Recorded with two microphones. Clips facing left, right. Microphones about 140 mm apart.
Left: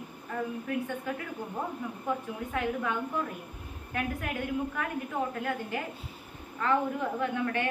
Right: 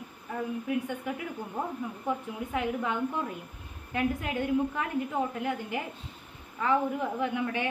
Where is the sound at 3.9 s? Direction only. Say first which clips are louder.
Right 4 dB; 20° right (ahead or behind).